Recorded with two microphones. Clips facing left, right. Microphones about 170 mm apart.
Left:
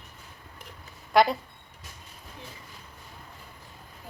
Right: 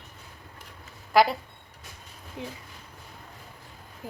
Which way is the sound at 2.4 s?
90° right.